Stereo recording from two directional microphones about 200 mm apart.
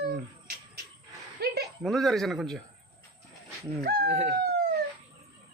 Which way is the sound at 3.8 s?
55° right (ahead or behind).